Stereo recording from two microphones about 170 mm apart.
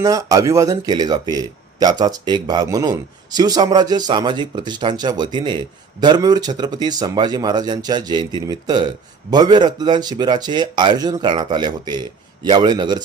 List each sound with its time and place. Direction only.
0.0 s speech: 20° right (ahead or behind)